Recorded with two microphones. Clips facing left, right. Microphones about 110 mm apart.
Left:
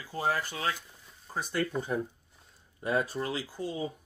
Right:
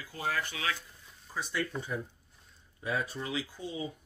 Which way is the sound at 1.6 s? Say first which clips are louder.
Left 5 dB; 55° left (ahead or behind).